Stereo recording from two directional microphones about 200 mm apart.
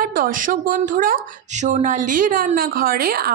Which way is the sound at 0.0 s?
45° right (ahead or behind).